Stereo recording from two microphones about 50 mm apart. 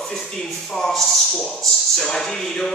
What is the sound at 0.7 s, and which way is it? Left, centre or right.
A man's voice, centre.